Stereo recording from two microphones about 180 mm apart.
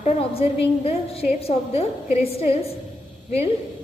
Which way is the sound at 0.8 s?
35° left (ahead or behind).